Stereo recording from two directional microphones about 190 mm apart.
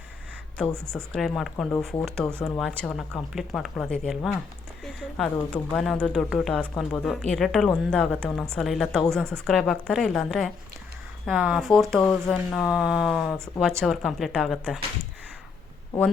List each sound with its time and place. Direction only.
0.6 s speech: 5° left (ahead or behind)